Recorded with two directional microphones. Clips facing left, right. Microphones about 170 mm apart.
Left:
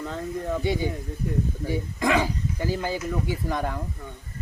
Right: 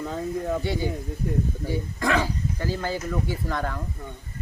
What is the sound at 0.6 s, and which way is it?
Speech, 15° left (ahead or behind).